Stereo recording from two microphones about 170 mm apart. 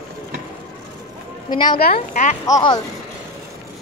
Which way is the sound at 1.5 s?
25° left (ahead or behind).